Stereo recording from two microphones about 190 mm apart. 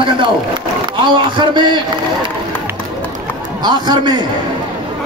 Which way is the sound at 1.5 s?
25° right (ahead or behind).